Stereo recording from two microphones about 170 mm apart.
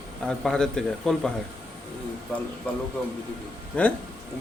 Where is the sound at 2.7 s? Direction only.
10° left (ahead or behind).